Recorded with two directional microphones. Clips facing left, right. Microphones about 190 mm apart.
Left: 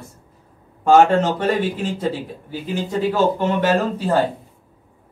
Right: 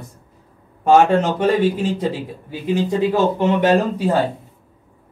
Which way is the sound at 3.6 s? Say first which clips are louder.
Right 3 dB; 15° right (ahead or behind).